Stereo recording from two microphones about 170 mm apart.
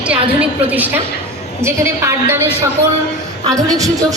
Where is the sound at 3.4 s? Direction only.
20° right (ahead or behind).